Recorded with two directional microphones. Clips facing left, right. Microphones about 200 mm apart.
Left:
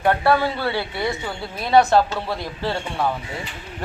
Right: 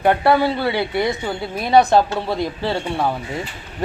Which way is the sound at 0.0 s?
15° right (ahead or behind).